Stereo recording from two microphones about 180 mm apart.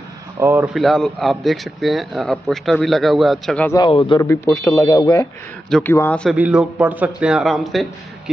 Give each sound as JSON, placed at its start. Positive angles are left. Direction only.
{"t": 0.4, "sound": "speech", "side_deg": -10}
{"t": 0.7, "sound": "speech", "side_deg": 0}
{"t": 3.6, "sound": "a man's voice", "side_deg": 20}
{"t": 4.3, "sound": "speech", "side_deg": 15}
{"t": 5.7, "sound": "speech", "side_deg": 5}
{"t": 6.3, "sound": "speech", "side_deg": -5}